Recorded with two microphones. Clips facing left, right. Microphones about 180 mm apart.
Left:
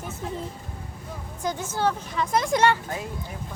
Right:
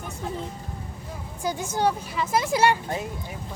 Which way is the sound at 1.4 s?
10° right (ahead or behind).